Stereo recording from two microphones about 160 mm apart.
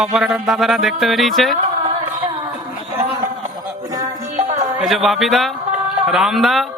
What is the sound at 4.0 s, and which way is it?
Music, 45° right (ahead or behind).